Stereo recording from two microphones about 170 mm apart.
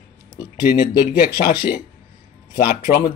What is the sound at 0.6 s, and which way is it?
Speech, 65° left (ahead or behind).